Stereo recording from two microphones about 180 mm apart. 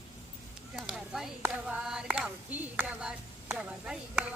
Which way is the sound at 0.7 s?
Centre (ahead or behind).